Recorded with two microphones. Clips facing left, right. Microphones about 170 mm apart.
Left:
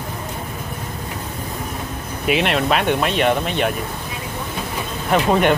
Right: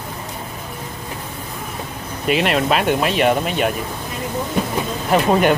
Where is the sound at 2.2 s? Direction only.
Centre (ahead or behind).